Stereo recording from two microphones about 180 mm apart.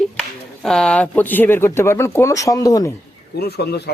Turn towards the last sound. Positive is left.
turn(degrees=65)  # may be behind; listen again after turning